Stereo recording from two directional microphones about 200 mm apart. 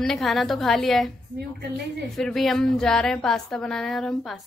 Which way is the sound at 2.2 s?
Centre (ahead or behind).